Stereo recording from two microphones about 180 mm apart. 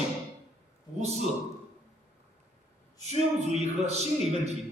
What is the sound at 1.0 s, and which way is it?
Speech, 35° right (ahead or behind).